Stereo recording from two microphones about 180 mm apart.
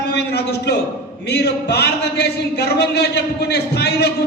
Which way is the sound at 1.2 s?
65° left (ahead or behind).